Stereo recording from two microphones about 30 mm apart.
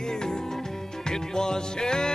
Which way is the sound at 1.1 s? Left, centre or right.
Left.